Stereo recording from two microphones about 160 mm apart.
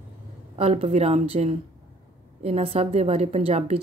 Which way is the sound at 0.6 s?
40° right (ahead or behind).